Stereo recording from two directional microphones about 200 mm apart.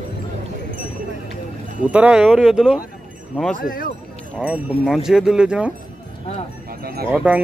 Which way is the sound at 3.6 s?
45° left (ahead or behind).